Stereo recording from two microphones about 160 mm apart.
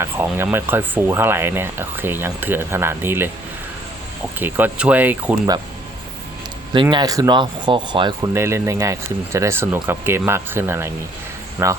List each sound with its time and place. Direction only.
0.0 s speech: 15° right (ahead or behind)
4.4 s speech: 10° right (ahead or behind)
6.9 s speech: 20° right (ahead or behind)
8.2 s speech: 15° right (ahead or behind)